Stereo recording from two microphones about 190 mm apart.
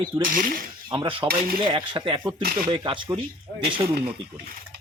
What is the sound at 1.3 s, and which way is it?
Speech, 50° right (ahead or behind).